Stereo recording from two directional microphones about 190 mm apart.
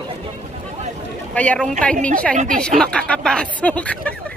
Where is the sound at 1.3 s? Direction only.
5° left (ahead or behind).